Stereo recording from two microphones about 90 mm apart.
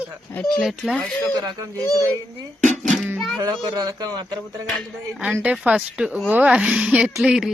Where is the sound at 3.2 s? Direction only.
Centre (ahead or behind).